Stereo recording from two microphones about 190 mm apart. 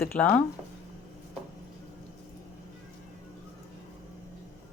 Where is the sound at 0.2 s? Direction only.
5° left (ahead or behind).